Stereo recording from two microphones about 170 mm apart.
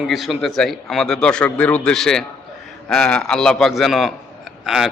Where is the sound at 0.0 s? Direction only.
Centre (ahead or behind).